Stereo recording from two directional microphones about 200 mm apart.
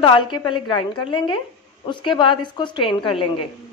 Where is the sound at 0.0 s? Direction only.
25° left (ahead or behind).